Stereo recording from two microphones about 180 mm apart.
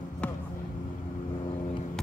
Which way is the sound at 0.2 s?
5° left (ahead or behind).